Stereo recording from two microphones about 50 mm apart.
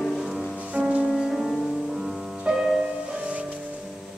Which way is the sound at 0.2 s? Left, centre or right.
Centre.